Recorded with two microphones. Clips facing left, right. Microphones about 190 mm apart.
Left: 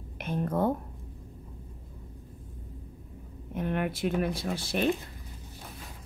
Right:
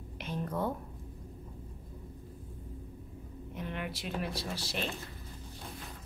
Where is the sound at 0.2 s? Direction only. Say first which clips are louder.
Left 6 dB; 55° left (ahead or behind).